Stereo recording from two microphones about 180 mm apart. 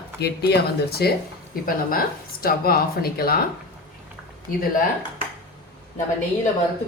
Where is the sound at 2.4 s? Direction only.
55° left (ahead or behind).